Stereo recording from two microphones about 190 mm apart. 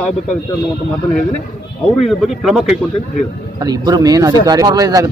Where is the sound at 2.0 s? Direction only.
Centre (ahead or behind).